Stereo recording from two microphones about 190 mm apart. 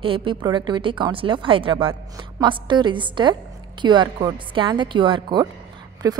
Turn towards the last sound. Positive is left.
turn(degrees=-20)  # may be behind; listen again after turning